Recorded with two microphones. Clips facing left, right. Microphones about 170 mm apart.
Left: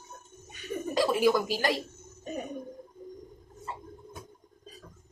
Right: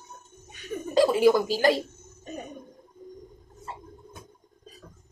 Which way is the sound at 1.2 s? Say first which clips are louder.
Right 5 dB; 25° right (ahead or behind).